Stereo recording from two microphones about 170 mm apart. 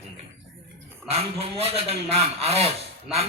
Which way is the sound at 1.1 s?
35° right (ahead or behind).